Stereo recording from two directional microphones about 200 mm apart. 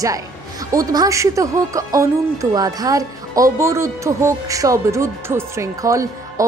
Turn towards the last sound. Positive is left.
turn(degrees=-15)  # may be behind; listen again after turning